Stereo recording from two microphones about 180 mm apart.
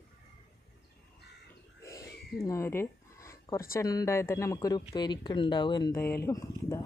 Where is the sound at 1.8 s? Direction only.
15° left (ahead or behind).